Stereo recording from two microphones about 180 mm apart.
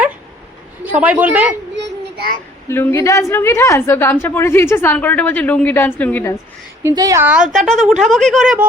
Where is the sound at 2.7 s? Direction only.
15° left (ahead or behind).